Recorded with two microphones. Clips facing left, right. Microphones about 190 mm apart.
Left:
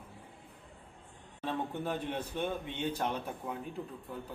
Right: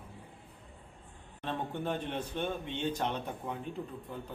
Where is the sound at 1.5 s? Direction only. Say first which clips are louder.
Even; 10° left (ahead or behind).